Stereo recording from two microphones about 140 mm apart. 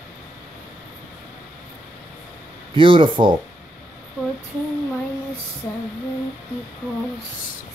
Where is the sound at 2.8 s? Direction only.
35° right (ahead or behind).